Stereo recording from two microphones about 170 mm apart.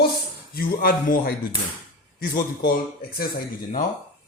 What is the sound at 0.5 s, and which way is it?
A man's voice, 60° left (ahead or behind).